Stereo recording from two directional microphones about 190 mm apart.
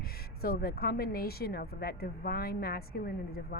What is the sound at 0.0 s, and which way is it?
A woman's voice, 50° left (ahead or behind).